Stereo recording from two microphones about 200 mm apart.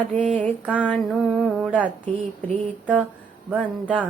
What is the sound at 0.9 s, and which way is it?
Music, centre (ahead or behind).